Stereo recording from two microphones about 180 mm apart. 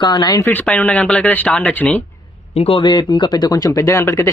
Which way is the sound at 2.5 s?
35° left (ahead or behind).